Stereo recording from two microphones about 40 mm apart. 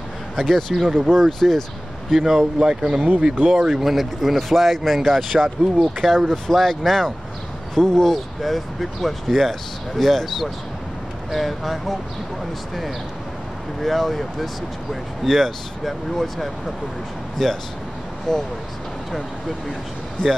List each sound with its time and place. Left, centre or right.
0.4 s speech: centre
0.8 s speech: centre
1.4 s speech: centre
2.6 s speech: right
3.3 s speech: right
3.8 s speech: centre
13.8 s speech: centre